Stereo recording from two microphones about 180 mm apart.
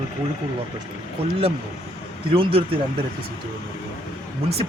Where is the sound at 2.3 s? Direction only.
30° right (ahead or behind).